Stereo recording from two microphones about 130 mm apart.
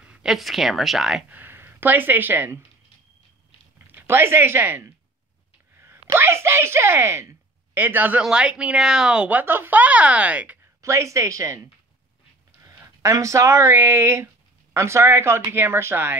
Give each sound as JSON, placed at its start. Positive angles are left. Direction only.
{"t": 0.0, "sound": "speech", "side_deg": -5}
{"t": 1.4, "sound": "speech", "side_deg": -15}
{"t": 3.8, "sound": "speech", "side_deg": -15}
{"t": 5.8, "sound": "a sound", "side_deg": -20}
{"t": 6.1, "sound": "speech", "side_deg": -20}
{"t": 10.8, "sound": "speech", "side_deg": -25}
{"t": 12.7, "sound": "speech", "side_deg": -25}